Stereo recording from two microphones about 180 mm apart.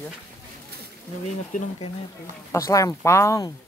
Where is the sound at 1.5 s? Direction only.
40° left (ahead or behind).